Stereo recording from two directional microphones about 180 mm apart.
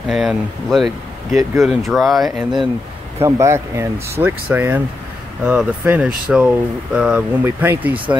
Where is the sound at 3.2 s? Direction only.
15° right (ahead or behind).